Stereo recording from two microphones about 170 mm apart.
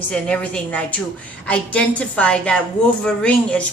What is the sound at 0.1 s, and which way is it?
Speech, 5° left (ahead or behind).